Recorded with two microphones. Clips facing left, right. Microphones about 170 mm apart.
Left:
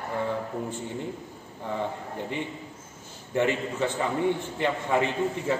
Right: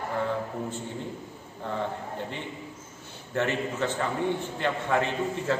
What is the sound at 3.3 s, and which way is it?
A man's voice, 15° left (ahead or behind).